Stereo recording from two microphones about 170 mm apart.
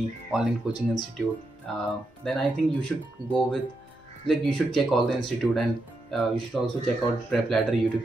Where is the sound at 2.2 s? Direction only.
Centre (ahead or behind).